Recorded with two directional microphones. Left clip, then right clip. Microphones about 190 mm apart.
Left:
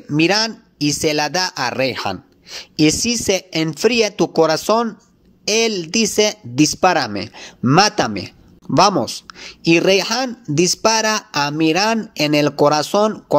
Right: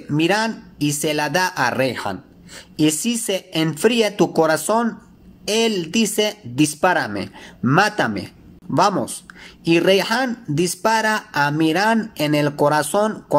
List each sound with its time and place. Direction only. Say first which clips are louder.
0.1 s speech: left 2 dB; 35° left (ahead or behind)